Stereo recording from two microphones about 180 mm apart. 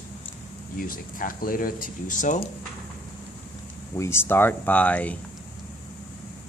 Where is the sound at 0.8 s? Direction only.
50° left (ahead or behind).